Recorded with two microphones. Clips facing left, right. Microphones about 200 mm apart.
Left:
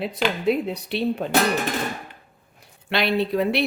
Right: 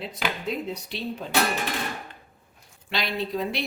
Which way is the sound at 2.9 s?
65° left (ahead or behind).